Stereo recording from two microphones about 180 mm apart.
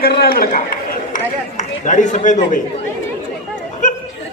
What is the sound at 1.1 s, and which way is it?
Chatter, 40° left (ahead or behind).